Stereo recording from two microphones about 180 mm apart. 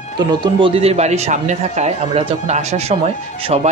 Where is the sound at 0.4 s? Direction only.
30° right (ahead or behind).